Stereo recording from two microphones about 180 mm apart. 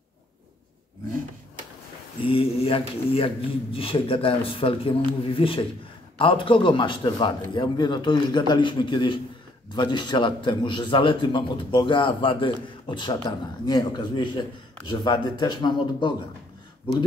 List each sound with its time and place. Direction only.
2.2 s a man's voice: 30° left (ahead or behind)